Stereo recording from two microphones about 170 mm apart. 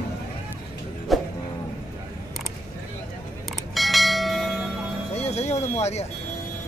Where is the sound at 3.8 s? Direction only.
Centre (ahead or behind).